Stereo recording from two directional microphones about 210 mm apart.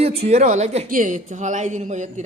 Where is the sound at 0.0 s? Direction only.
30° right (ahead or behind).